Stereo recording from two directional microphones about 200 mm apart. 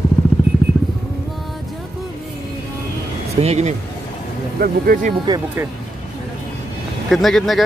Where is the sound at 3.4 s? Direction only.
35° right (ahead or behind).